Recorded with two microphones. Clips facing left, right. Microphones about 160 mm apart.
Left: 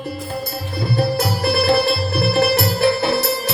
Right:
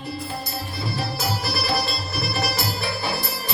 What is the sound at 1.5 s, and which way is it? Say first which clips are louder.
Music: left 13 dB; 60° left (ahead or behind).